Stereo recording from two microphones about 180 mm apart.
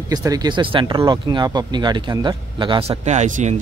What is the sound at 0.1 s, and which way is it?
Speech, 20° right (ahead or behind).